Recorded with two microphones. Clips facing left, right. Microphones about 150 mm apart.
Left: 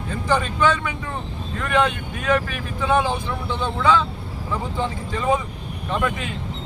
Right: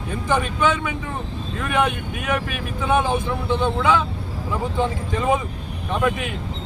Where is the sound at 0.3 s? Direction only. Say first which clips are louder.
Left 1 dB; 20° right (ahead or behind).